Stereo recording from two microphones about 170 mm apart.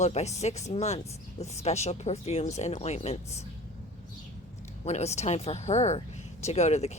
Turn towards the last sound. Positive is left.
turn(degrees=40)  # may be behind; listen again after turning